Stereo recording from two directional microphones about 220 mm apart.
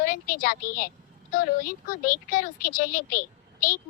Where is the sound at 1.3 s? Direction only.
40° left (ahead or behind).